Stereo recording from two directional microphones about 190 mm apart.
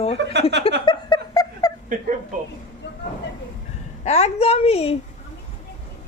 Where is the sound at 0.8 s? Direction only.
20° left (ahead or behind).